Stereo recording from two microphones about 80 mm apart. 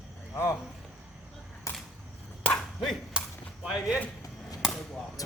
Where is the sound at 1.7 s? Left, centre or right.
Left.